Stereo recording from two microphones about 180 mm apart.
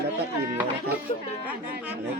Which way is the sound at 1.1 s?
35° left (ahead or behind).